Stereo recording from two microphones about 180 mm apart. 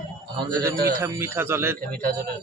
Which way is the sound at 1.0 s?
15° right (ahead or behind).